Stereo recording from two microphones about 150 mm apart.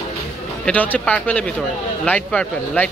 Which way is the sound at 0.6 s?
10° left (ahead or behind).